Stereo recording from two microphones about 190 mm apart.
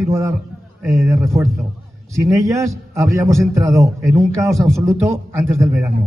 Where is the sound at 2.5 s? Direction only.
15° right (ahead or behind).